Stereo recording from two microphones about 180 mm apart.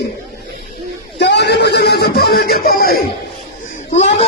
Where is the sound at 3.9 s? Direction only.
40° left (ahead or behind).